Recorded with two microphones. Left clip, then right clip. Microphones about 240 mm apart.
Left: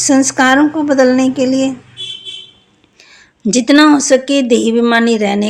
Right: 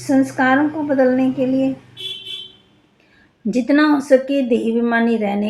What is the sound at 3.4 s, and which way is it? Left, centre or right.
Speech, left.